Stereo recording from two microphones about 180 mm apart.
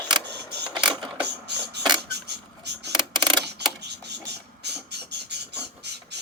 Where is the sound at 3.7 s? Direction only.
70° right (ahead or behind).